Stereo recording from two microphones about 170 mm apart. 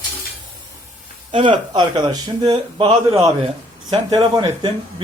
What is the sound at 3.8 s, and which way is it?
Speech, 25° right (ahead or behind).